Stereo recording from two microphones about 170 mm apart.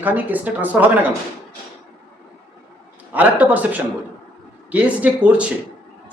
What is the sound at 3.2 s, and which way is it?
Speech, 10° right (ahead or behind).